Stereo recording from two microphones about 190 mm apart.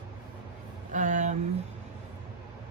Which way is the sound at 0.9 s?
40° right (ahead or behind).